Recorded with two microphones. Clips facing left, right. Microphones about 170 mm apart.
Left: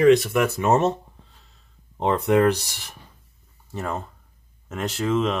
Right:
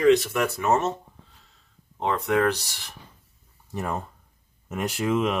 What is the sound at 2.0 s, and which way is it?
Speech, 20° left (ahead or behind).